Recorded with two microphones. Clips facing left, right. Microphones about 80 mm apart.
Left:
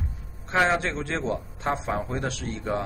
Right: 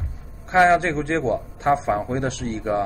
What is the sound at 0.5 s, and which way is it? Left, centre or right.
A man's voice, centre.